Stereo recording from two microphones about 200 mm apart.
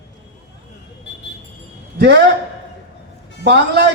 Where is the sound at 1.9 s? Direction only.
55° right (ahead or behind).